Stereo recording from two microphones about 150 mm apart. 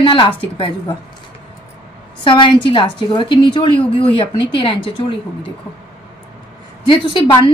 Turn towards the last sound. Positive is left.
turn(degrees=35)  # may be behind; listen again after turning